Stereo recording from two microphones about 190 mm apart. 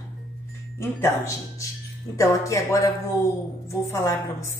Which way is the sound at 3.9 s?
15° left (ahead or behind).